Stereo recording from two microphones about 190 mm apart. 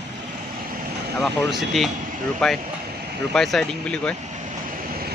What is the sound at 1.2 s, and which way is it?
Speech, centre (ahead or behind).